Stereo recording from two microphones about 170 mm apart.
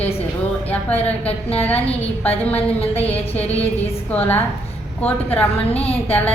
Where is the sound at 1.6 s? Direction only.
10° left (ahead or behind).